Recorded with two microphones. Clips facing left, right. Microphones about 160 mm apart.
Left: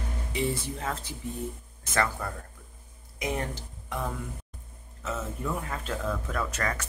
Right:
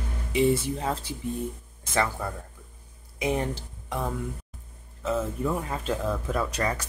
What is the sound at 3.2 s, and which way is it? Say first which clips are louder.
Speech: right 5 dB; 25° right (ahead or behind).